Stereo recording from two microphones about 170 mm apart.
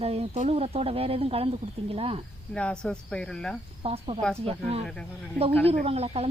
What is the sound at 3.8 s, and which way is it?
Speech, 35° right (ahead or behind).